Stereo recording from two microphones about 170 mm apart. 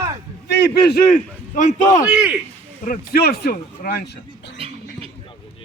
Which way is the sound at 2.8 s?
55° left (ahead or behind).